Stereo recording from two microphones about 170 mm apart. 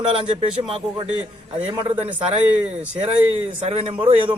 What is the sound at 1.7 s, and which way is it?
Speech, 40° right (ahead or behind).